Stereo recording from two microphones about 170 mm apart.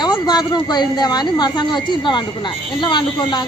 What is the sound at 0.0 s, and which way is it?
Speech, 25° left (ahead or behind).